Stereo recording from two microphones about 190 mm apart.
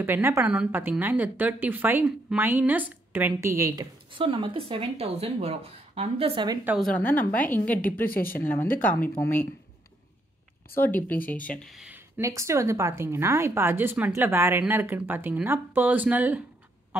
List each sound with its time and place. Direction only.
0.0 s a woman's voice: 10° right (ahead or behind)
6.6 s a woman's voice: 5° right (ahead or behind)
6.9 s speech: 10° left (ahead or behind)
10.7 s speech: 10° left (ahead or behind)
12.2 s a woman's voice: 15° right (ahead or behind)